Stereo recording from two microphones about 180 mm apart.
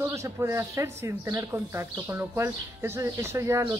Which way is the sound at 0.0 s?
15° right (ahead or behind).